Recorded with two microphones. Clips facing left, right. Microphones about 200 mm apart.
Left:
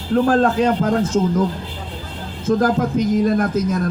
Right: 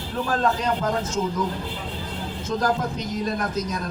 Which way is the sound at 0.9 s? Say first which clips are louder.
Left 8 dB; 50° left (ahead or behind).